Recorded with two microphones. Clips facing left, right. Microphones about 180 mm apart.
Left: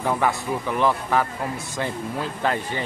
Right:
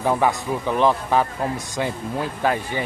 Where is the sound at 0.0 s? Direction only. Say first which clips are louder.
Right 3 dB; 15° right (ahead or behind).